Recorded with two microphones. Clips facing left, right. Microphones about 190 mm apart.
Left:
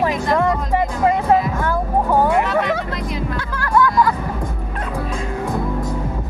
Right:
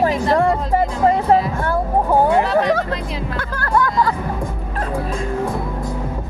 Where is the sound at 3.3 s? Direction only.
40° right (ahead or behind).